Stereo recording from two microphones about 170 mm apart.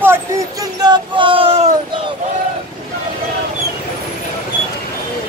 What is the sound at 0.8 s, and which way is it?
Speech, 25° right (ahead or behind).